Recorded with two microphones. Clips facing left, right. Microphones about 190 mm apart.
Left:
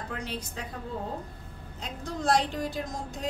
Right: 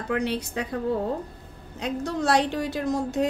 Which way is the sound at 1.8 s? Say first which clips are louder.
Right 8 dB; 70° right (ahead or behind).